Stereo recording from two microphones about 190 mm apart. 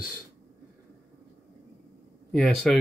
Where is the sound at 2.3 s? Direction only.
5° left (ahead or behind).